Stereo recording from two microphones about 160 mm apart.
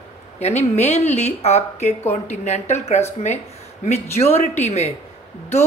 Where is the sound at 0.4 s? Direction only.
45° left (ahead or behind).